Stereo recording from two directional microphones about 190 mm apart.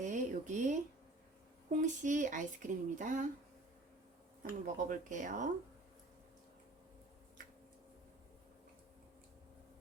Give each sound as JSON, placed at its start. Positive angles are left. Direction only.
{"t": 0.0, "sound": "a sound", "side_deg": -40}
{"t": 1.7, "sound": "speech", "side_deg": -40}
{"t": 4.4, "sound": "speech", "side_deg": -45}